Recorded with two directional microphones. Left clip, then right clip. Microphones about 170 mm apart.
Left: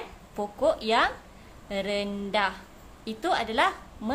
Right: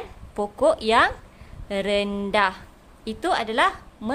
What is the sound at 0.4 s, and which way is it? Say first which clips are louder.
A woman's voice: right 5 dB; 40° right (ahead or behind).